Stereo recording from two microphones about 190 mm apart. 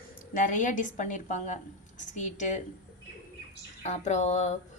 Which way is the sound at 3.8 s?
35° left (ahead or behind).